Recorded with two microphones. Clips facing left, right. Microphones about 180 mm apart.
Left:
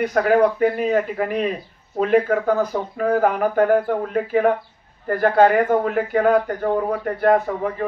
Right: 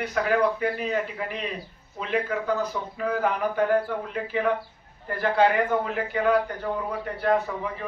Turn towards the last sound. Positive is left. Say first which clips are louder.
# left 7 dB
turn(degrees=50)  # may be behind; listen again after turning